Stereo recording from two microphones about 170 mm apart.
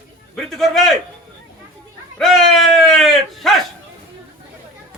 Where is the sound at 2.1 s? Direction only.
Centre (ahead or behind).